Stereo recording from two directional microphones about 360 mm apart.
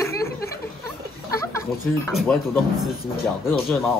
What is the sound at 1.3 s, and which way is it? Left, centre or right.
Speech, centre.